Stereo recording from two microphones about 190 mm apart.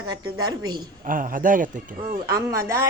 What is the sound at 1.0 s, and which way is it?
Speech, 45° right (ahead or behind).